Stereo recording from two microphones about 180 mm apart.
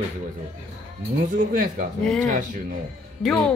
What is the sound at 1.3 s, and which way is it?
Speech, 50° right (ahead or behind).